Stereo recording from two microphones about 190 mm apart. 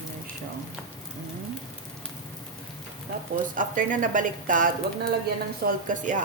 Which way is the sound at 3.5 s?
45° right (ahead or behind).